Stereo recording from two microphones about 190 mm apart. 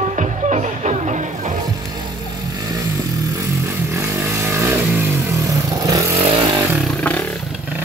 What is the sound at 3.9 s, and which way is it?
Vehicle, 15° right (ahead or behind).